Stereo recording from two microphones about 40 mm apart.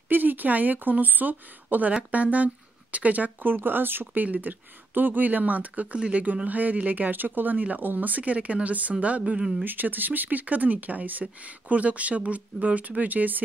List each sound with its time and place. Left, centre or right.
0.1 s speech: right
3.4 s speech: right
5.9 s speech: right
6.4 s speech: right
9.7 s speech: right